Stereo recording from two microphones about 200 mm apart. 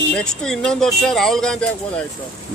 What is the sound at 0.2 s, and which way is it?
Speech, 5° left (ahead or behind).